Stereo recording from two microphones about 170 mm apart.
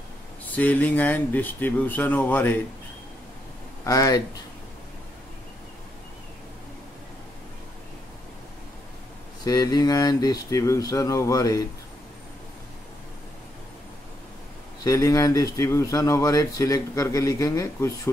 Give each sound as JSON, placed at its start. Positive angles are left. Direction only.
{"t": 0.6, "sound": "speech", "side_deg": 10}
{"t": 3.8, "sound": "speech", "side_deg": 20}
{"t": 9.4, "sound": "speech", "side_deg": 25}
{"t": 14.8, "sound": "speech", "side_deg": 20}